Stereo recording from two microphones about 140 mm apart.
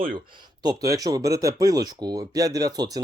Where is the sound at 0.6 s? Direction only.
25° right (ahead or behind).